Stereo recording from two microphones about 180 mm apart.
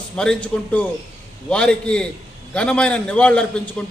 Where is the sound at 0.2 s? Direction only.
5° left (ahead or behind).